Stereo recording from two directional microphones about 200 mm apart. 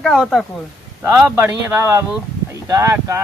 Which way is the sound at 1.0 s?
15° right (ahead or behind).